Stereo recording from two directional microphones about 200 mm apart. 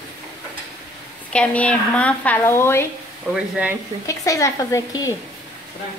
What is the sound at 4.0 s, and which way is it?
Speech, 15° left (ahead or behind).